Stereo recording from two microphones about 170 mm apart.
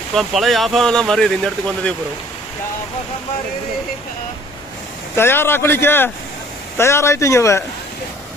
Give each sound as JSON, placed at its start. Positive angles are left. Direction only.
{"t": 0.1, "sound": "speech", "side_deg": 0}
{"t": 5.1, "sound": "speech", "side_deg": 15}